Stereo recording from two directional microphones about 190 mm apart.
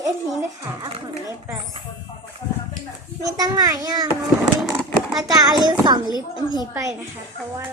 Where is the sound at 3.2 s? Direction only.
20° right (ahead or behind).